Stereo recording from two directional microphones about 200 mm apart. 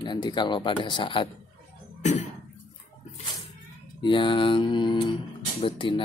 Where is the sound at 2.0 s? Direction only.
35° left (ahead or behind).